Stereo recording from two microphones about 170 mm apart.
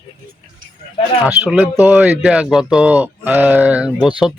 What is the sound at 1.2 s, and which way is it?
Speech, 5° right (ahead or behind).